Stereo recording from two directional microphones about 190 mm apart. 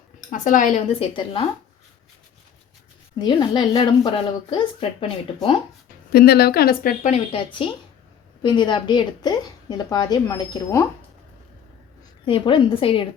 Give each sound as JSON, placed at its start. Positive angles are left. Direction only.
{"t": 0.3, "sound": "speech", "side_deg": 40}
{"t": 3.2, "sound": "a woman's voice", "side_deg": 25}
{"t": 6.1, "sound": "a woman's voice", "side_deg": 55}
{"t": 7.0, "sound": "a woman's voice", "side_deg": 30}
{"t": 12.2, "sound": "a woman's voice", "side_deg": 30}